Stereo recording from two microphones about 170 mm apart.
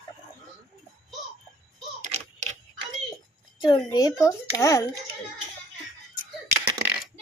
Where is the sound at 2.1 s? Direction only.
40° right (ahead or behind).